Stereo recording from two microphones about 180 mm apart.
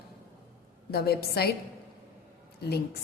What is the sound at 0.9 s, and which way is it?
Speech, 60° left (ahead or behind).